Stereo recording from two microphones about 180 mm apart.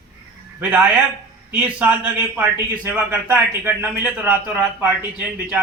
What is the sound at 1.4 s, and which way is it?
A man's voice, 5° right (ahead or behind).